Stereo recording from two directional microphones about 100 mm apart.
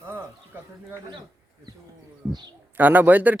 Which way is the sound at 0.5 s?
20° right (ahead or behind).